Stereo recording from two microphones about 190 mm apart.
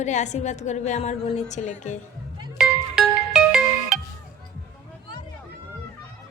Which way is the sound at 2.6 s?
5° right (ahead or behind).